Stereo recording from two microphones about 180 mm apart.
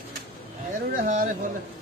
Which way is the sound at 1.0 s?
45° right (ahead or behind).